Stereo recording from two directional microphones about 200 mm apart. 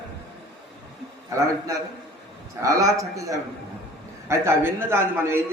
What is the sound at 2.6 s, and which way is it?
A man's voice, 15° right (ahead or behind).